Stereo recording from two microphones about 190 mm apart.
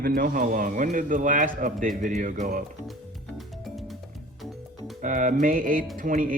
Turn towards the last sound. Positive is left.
turn(degrees=-45)  # may be behind; listen again after turning